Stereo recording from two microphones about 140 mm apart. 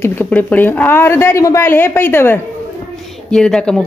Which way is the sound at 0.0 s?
15° left (ahead or behind).